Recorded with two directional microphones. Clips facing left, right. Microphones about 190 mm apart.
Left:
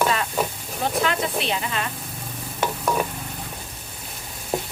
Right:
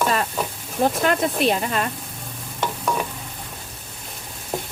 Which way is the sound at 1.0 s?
45° right (ahead or behind).